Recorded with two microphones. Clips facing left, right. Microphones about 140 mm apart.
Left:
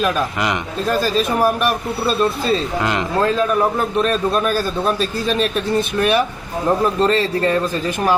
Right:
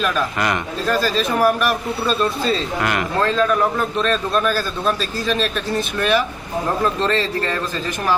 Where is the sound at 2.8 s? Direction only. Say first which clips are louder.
Right 1 dB; 20° left (ahead or behind).